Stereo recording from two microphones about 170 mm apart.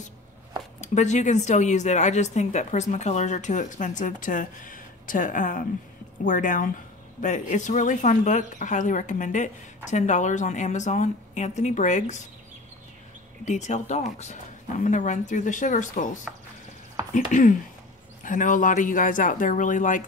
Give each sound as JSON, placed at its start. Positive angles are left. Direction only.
{"t": 0.7, "sound": "speech", "side_deg": 45}
{"t": 13.5, "sound": "speech", "side_deg": 45}
{"t": 17.1, "sound": "speech", "side_deg": 50}